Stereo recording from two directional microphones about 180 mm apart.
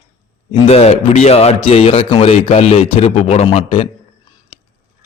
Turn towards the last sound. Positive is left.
turn(degrees=35)  # may be behind; listen again after turning